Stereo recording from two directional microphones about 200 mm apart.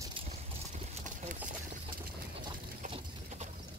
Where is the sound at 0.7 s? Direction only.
35° right (ahead or behind).